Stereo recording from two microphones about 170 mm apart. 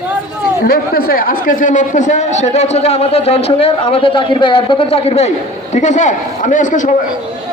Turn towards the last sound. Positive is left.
turn(degrees=50)  # may be behind; listen again after turning